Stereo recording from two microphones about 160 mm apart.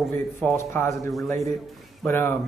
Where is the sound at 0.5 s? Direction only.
15° left (ahead or behind).